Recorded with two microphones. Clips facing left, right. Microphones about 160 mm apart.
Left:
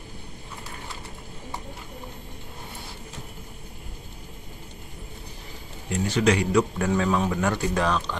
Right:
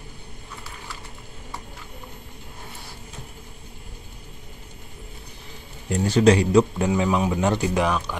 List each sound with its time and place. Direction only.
5.9 s speech: 35° right (ahead or behind)
6.9 s speech: 10° right (ahead or behind)